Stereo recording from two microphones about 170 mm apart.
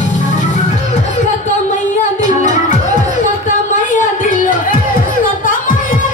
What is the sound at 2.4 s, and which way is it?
Music, 45° left (ahead or behind).